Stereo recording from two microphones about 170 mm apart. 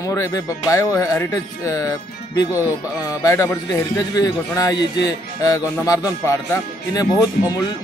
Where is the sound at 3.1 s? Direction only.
20° left (ahead or behind).